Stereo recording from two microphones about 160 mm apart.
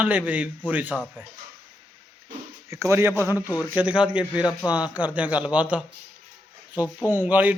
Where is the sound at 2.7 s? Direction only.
15° right (ahead or behind).